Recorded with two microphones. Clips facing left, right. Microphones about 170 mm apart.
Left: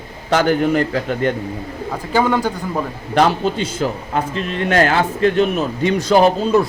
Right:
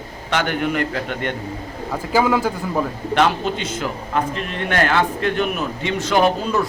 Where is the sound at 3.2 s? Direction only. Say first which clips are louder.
Left 4 dB; 35° left (ahead or behind).